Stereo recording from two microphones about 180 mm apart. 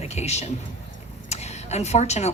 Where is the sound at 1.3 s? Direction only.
40° left (ahead or behind).